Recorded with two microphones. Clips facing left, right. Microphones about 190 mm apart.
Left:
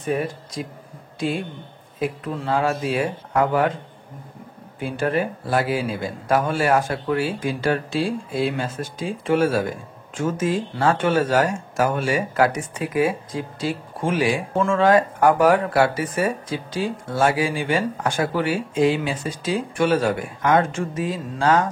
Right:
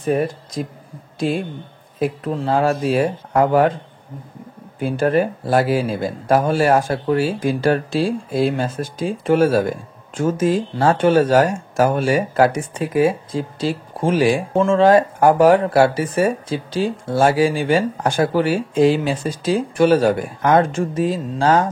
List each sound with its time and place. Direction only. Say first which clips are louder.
0.6 s speech: right 5 dB; 45° right (ahead or behind)
2.0 s speech: right 5 dB; 40° right (ahead or behind)
4.7 s speech: right 5 dB; 40° right (ahead or behind)